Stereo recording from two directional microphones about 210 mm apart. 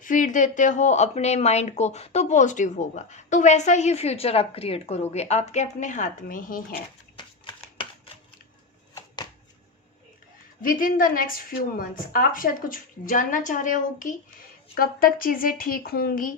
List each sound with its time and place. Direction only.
0.0 s speech: 40° left (ahead or behind)
7.4 s shuffling cards: 25° left (ahead or behind)
10.6 s a woman's voice: 40° left (ahead or behind)